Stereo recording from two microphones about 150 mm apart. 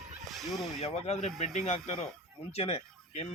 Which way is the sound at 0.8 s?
45° left (ahead or behind).